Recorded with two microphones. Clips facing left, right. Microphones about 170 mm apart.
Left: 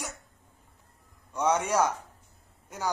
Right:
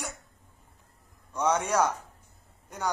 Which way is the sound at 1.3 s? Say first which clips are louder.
Even; 10° left (ahead or behind).